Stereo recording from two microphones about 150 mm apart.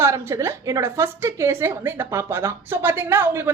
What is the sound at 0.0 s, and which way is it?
A woman's voice, 20° right (ahead or behind).